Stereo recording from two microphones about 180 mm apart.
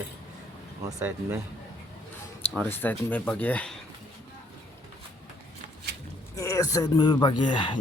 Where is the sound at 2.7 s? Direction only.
10° left (ahead or behind).